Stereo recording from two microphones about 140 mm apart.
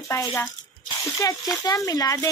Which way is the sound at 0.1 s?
20° left (ahead or behind).